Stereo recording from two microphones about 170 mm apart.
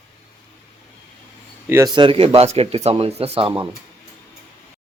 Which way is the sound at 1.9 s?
30° right (ahead or behind).